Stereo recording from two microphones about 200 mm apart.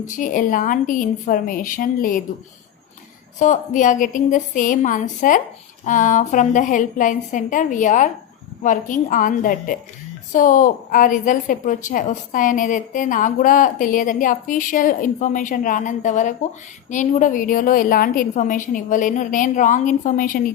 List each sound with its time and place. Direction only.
0.0 s a woman's voice: 40° left (ahead or behind)
3.3 s a woman's voice: 40° left (ahead or behind)